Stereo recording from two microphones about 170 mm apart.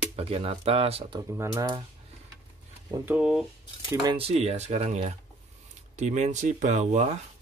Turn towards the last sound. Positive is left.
turn(degrees=-40)  # may be behind; listen again after turning